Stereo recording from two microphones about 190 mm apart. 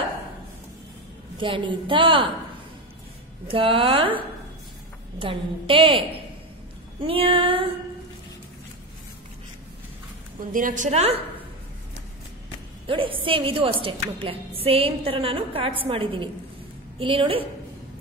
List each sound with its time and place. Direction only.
1.4 s a woman's voice: 25° right (ahead or behind)
3.4 s a woman's voice: 30° right (ahead or behind)
5.2 s a woman's voice: 30° right (ahead or behind)
10.5 s a woman's voice: 45° right (ahead or behind)
12.8 s a woman's voice: 30° right (ahead or behind)